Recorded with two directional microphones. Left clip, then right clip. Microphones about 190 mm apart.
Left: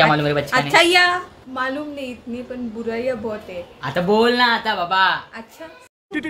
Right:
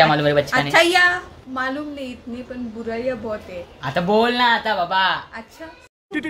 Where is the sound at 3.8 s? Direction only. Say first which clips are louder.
Left 1 dB; centre (ahead or behind).